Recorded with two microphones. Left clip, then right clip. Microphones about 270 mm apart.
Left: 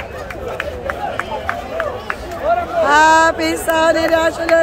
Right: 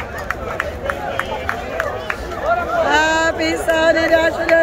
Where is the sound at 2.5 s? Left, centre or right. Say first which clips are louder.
Left 2 dB; left.